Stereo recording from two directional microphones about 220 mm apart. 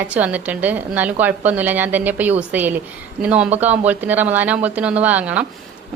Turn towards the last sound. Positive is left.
turn(degrees=-5)  # may be behind; listen again after turning